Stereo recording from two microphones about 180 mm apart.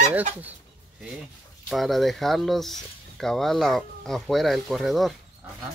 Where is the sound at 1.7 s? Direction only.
Centre (ahead or behind).